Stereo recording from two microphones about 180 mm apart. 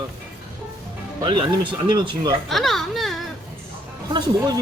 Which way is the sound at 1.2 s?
30° right (ahead or behind).